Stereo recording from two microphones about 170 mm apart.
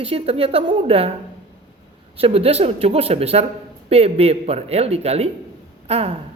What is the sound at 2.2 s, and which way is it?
A woman's voice, 35° right (ahead or behind).